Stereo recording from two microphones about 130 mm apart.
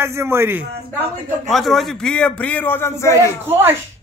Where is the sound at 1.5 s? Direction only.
Centre (ahead or behind); by 3.2 s 20° left (ahead or behind).